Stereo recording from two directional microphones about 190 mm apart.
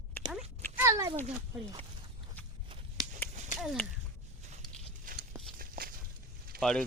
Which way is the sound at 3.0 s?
20° right (ahead or behind).